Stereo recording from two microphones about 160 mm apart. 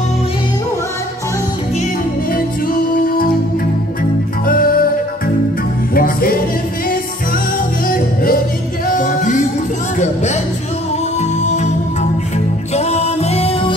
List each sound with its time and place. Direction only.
2.3 s music: 65° left (ahead or behind)
4.5 s music: 65° left (ahead or behind)
5.9 s music: 65° left (ahead or behind)
7.9 s music: 65° left (ahead or behind)
11.1 s music: 45° left (ahead or behind)